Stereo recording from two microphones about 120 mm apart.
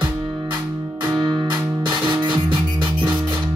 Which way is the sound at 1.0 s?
35° right (ahead or behind).